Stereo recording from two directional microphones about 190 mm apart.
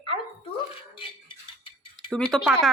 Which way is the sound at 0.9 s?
25° left (ahead or behind).